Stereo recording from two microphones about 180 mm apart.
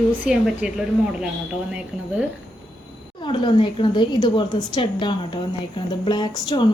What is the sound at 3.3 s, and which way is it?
A woman's voice, 25° left (ahead or behind).